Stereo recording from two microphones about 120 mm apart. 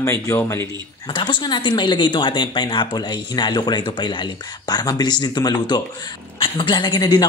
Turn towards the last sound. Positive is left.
turn(degrees=40)  # may be behind; listen again after turning